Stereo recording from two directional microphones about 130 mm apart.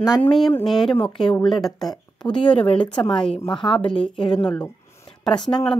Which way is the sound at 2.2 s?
40° left (ahead or behind).